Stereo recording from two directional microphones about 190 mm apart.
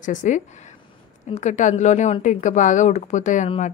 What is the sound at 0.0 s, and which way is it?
Speech, 40° left (ahead or behind).